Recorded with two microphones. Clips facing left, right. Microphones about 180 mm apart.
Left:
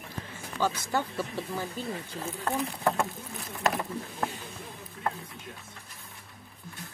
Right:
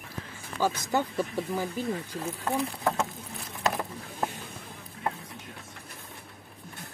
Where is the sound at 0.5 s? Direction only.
15° right (ahead or behind).